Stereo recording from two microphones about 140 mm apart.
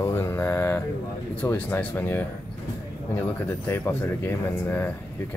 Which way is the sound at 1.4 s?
15° left (ahead or behind).